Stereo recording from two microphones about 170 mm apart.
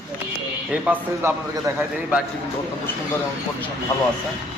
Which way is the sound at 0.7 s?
10° right (ahead or behind).